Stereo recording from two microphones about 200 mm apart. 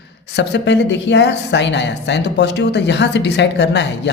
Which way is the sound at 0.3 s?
60° left (ahead or behind).